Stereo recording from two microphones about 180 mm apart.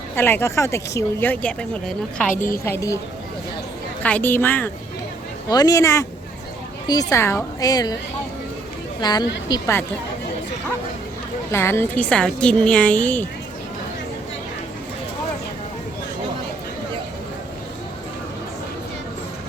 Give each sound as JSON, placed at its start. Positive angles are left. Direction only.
{"t": 0.2, "sound": "speech", "side_deg": 10}
{"t": 4.0, "sound": "speech", "side_deg": 10}
{"t": 7.1, "sound": "a woman's voice", "side_deg": 15}
{"t": 9.0, "sound": "a woman's voice", "side_deg": 25}
{"t": 11.5, "sound": "speech", "side_deg": 15}